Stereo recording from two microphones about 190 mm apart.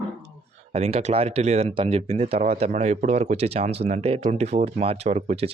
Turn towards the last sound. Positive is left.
turn(degrees=-35)  # may be behind; listen again after turning